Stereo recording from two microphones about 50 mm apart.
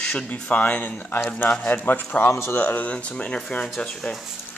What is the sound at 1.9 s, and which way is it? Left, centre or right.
Speech, left.